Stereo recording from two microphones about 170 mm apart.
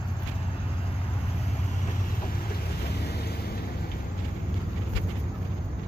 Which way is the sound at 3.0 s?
70° left (ahead or behind).